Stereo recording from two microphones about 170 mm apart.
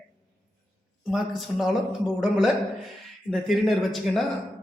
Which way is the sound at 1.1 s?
Centre (ahead or behind).